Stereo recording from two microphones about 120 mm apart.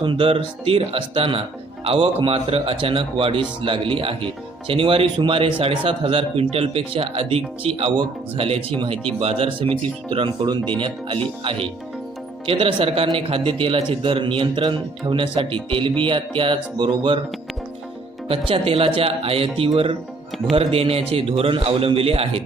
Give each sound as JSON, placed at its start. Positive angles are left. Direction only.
{"t": 0.0, "sound": "a man's voice", "side_deg": -45}
{"t": 18.3, "sound": "a man's voice", "side_deg": -50}